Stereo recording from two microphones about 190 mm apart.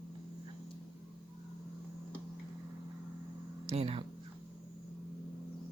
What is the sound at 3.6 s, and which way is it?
Speech, 30° right (ahead or behind).